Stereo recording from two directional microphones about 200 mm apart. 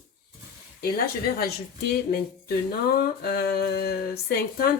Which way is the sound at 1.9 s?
50° left (ahead or behind).